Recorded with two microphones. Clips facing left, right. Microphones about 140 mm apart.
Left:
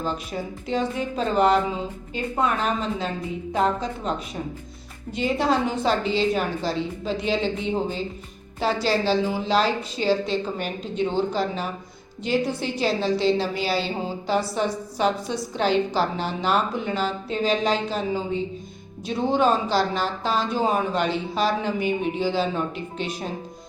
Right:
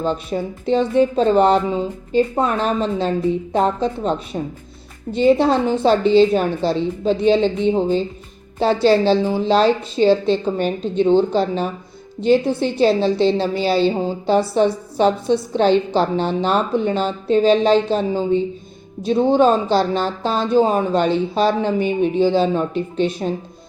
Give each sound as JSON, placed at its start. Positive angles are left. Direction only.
{"t": 0.0, "sound": "a woman's voice", "side_deg": -30}